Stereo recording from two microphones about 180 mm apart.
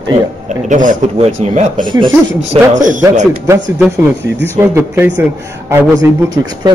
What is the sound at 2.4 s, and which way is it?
Speech, 40° right (ahead or behind).